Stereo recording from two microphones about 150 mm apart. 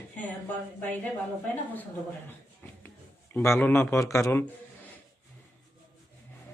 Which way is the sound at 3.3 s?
15° left (ahead or behind).